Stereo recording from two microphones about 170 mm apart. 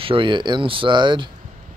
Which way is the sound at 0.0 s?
30° right (ahead or behind).